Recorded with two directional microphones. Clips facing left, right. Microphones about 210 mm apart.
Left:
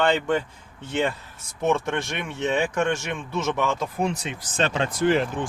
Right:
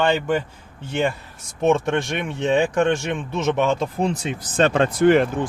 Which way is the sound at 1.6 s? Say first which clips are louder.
Right 5 dB; 20° right (ahead or behind).